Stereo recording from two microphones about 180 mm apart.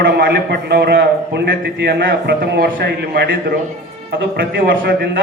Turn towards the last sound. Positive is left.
turn(degrees=-65)  # may be behind; listen again after turning